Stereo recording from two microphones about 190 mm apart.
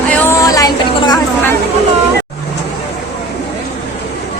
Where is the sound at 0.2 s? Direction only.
15° left (ahead or behind).